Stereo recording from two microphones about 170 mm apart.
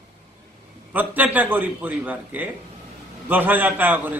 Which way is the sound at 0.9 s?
10° right (ahead or behind).